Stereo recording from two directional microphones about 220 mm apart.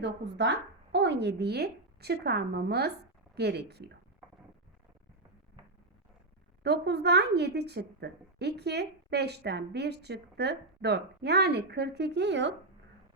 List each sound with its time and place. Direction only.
0.0 s speech: 50° right (ahead or behind)
6.6 s speech: 50° right (ahead or behind)